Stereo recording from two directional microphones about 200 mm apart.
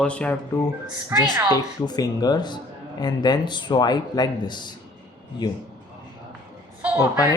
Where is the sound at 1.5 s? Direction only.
20° left (ahead or behind).